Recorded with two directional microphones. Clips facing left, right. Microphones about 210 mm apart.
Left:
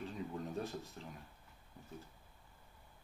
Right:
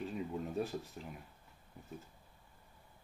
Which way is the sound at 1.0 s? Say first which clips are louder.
Right 3 dB; 15° right (ahead or behind).